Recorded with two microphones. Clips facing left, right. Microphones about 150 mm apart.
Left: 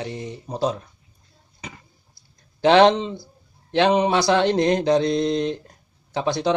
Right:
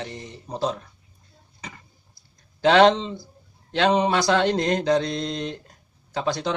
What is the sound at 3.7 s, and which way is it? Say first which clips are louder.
Mantra: left 2 dB; 20° left (ahead or behind).